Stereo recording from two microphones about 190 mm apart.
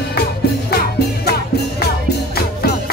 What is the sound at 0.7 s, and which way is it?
Music, 60° left (ahead or behind).